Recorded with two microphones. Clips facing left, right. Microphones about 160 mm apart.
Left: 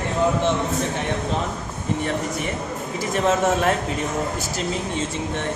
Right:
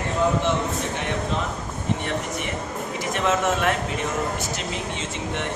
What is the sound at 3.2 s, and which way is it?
Speech, 35° left (ahead or behind).